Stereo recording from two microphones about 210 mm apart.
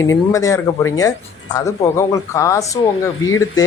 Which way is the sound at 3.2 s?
75° left (ahead or behind).